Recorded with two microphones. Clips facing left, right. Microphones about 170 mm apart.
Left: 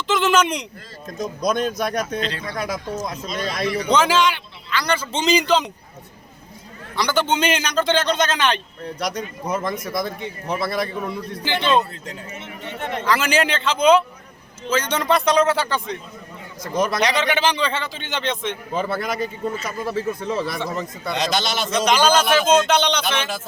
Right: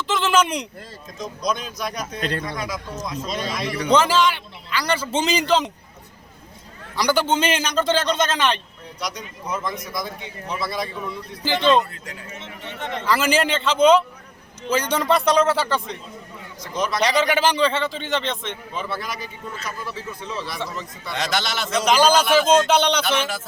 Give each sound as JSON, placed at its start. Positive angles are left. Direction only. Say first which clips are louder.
{"t": 0.1, "sound": "a sound", "louder": "left 2 dB", "side_deg": 0}
{"t": 1.0, "sound": "speech", "louder": "left 3 dB", "side_deg": 55}
{"t": 3.9, "sound": "a man's voice", "louder": "right 1 dB", "side_deg": -5}
{"t": 6.9, "sound": "a man's voice", "louder": "right 1 dB", "side_deg": -10}
{"t": 9.0, "sound": "speech", "louder": "left 4 dB", "side_deg": 55}
{"t": 11.4, "sound": "a man's voice", "louder": "right 2 dB", "side_deg": 0}
{"t": 13.1, "sound": "a man's voice", "louder": "even", "side_deg": -5}
{"t": 14.7, "sound": "a man's voice", "louder": "even", "side_deg": -10}
{"t": 16.7, "sound": "speech", "louder": "left 3 dB", "side_deg": 50}
{"t": 17.1, "sound": "a man's voice", "louder": "right 1 dB", "side_deg": 0}
{"t": 18.7, "sound": "speech", "louder": "left 6 dB", "side_deg": 50}
{"t": 21.1, "sound": "a man's voice", "louder": "left 2 dB", "side_deg": 20}
{"t": 21.8, "sound": "a man's voice", "louder": "right 1 dB", "side_deg": -5}